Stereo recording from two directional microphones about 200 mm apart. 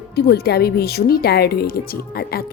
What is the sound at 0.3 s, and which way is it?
A woman's voice, 55° left (ahead or behind).